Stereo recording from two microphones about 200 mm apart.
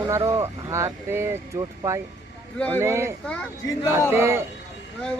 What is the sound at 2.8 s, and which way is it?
Speech, 15° right (ahead or behind).